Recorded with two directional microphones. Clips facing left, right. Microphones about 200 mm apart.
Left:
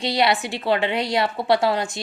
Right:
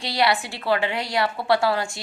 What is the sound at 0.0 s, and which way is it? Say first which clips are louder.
A woman's voice: left 2 dB; 20° left (ahead or behind).